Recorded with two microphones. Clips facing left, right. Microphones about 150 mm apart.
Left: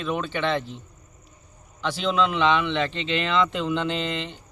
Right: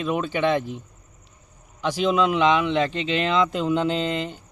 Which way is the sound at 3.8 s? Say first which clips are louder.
Right 4 dB; 40° right (ahead or behind).